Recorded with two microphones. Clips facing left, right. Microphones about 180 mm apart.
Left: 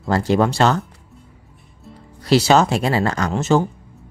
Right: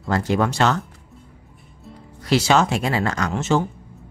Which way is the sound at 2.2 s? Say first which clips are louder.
Left 3 dB; 35° left (ahead or behind).